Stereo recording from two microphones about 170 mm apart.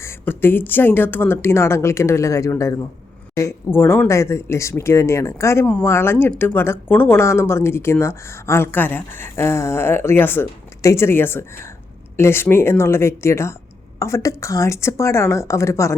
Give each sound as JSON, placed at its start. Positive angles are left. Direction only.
{"t": 0.0, "sound": "speech", "side_deg": 15}